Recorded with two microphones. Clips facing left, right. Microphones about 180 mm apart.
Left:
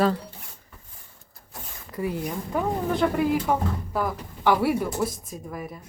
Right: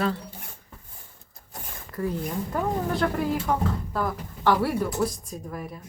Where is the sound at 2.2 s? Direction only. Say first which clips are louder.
Left 1 dB; centre (ahead or behind).